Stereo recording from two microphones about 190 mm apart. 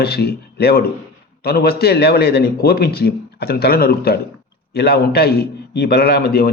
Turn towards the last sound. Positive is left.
turn(degrees=55)  # may be behind; listen again after turning